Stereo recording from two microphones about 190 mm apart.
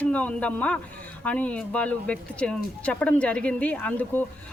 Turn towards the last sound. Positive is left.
turn(degrees=10)  # may be behind; listen again after turning